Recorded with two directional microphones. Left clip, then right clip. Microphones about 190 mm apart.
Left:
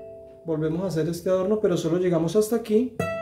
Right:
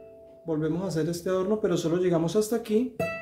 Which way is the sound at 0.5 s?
5° left (ahead or behind).